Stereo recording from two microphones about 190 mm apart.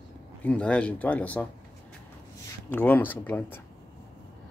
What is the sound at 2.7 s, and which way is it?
Speech, 10° left (ahead or behind).